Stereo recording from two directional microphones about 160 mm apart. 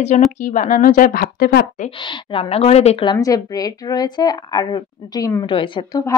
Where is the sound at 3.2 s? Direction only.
20° left (ahead or behind).